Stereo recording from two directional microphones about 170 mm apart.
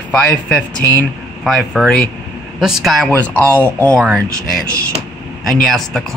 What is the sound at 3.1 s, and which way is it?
Speech, 10° left (ahead or behind).